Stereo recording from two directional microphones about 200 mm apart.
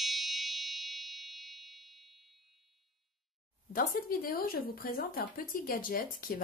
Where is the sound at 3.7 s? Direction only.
45° left (ahead or behind).